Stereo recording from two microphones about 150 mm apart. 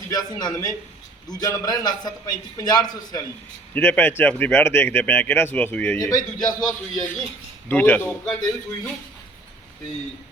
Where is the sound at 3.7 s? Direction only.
10° left (ahead or behind).